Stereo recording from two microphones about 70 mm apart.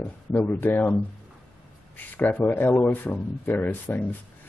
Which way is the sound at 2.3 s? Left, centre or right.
Left.